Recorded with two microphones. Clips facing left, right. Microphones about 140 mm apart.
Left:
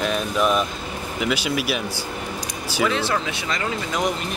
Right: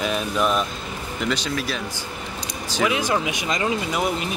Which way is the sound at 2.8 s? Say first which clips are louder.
Right 1 dB; 15° right (ahead or behind).